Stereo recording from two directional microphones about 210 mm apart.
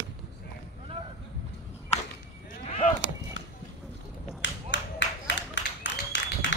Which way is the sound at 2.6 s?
30° left (ahead or behind).